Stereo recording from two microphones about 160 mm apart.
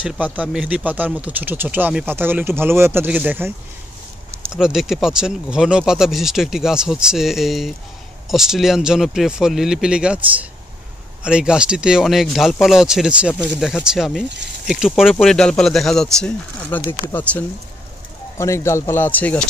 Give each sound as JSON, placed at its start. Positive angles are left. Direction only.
{"t": 0.0, "sound": "speech", "side_deg": -10}
{"t": 4.6, "sound": "speech", "side_deg": -5}